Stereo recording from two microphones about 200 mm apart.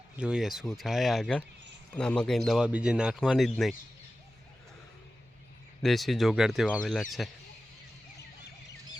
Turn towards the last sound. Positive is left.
turn(degrees=0)  # may be behind; listen again after turning